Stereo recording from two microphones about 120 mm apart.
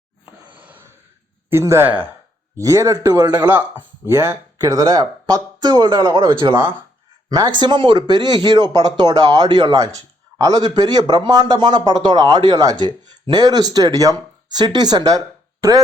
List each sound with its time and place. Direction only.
1.5 s speech: 20° right (ahead or behind)
4.0 s speech: 20° right (ahead or behind)